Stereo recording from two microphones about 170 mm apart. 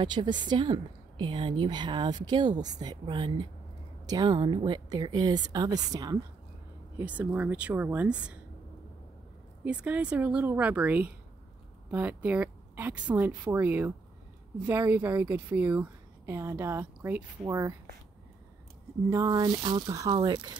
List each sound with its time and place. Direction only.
0.0 s a woman's voice: 25° right (ahead or behind)
7.0 s a woman's voice: 10° right (ahead or behind)
9.7 s a woman's voice: 10° right (ahead or behind)
19.0 s a woman's voice: 20° right (ahead or behind)